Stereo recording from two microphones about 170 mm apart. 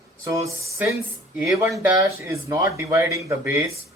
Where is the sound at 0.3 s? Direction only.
20° right (ahead or behind).